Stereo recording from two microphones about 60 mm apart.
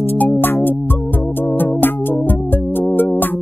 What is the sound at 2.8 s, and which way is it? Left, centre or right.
Music, left.